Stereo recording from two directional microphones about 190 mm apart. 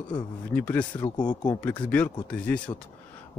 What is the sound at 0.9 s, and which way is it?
Speech, 25° left (ahead or behind).